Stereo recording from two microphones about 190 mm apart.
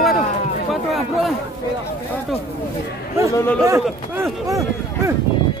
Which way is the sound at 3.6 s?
15° right (ahead or behind).